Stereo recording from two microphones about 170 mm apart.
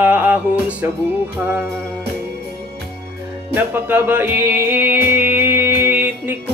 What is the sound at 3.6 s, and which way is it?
Music, 10° right (ahead or behind).